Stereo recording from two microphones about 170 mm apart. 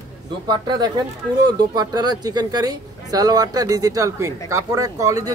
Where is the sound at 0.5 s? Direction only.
25° right (ahead or behind).